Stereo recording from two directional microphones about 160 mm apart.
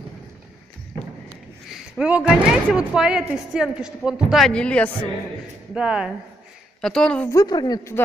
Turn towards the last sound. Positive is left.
turn(degrees=25)  # may be behind; listen again after turning